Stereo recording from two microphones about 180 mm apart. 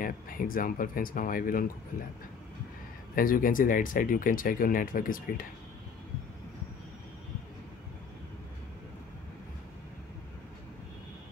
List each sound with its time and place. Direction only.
0.0 s speech: 50° left (ahead or behind)
3.2 s speech: 50° left (ahead or behind)